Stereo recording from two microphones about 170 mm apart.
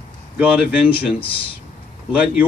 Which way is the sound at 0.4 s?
5° right (ahead or behind).